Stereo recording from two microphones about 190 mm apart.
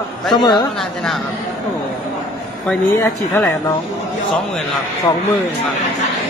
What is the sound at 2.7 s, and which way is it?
Speech, 10° left (ahead or behind).